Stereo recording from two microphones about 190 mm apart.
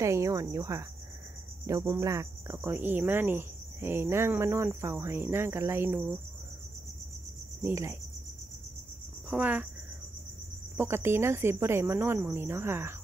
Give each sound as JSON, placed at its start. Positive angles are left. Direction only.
{"t": 0.0, "sound": "cricket", "side_deg": -15}
{"t": 7.6, "sound": "cricket", "side_deg": -15}
{"t": 9.3, "sound": "cricket", "side_deg": -5}
{"t": 10.8, "sound": "cricket", "side_deg": -15}